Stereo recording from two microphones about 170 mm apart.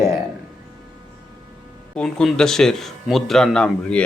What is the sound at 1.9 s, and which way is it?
Speech, 5° left (ahead or behind).